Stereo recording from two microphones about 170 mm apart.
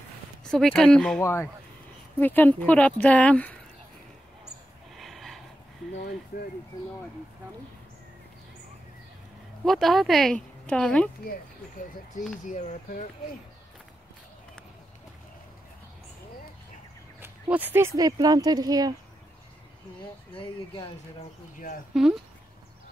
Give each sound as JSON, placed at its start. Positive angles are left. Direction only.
{"t": 0.4, "sound": "speech", "side_deg": 5}
{"t": 1.2, "sound": "speech", "side_deg": 15}
{"t": 4.9, "sound": "a sound", "side_deg": 0}
{"t": 9.7, "sound": "speech", "side_deg": 0}
{"t": 12.4, "sound": "speech", "side_deg": 45}
{"t": 17.2, "sound": "speech", "side_deg": -10}
{"t": 20.3, "sound": "speech", "side_deg": 30}
{"t": 21.9, "sound": "speech", "side_deg": -5}